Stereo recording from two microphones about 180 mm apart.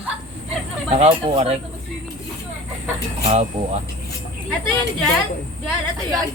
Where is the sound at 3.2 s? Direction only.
40° right (ahead or behind).